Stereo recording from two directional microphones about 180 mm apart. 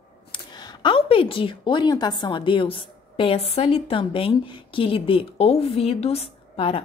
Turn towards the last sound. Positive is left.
turn(degrees=30)  # may be behind; listen again after turning